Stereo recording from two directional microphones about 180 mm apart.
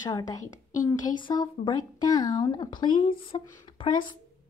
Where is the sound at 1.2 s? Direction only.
25° left (ahead or behind).